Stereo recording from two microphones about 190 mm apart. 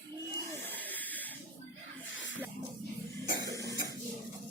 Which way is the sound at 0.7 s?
10° left (ahead or behind).